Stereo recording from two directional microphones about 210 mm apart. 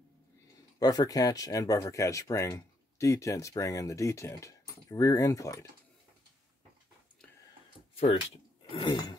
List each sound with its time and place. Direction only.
0.7 s speech: 15° left (ahead or behind)
8.6 s sneeze: 25° left (ahead or behind)